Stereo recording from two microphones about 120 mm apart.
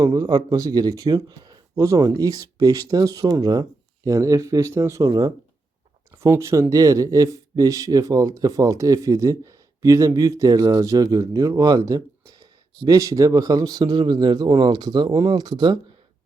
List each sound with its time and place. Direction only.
0.0 s speech: 25° right (ahead or behind)
6.1 s speech: 20° right (ahead or behind); by 15.8 s 35° right (ahead or behind)